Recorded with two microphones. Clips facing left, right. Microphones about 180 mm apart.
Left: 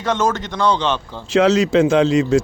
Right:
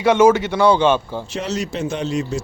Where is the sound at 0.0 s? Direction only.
10° right (ahead or behind).